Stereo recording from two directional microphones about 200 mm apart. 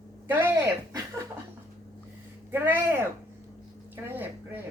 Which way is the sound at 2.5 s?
10° right (ahead or behind).